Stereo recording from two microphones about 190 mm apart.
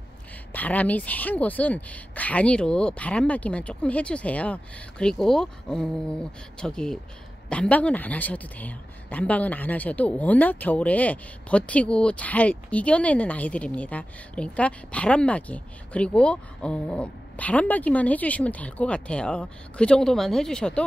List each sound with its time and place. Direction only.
0.5 s speech: 10° left (ahead or behind)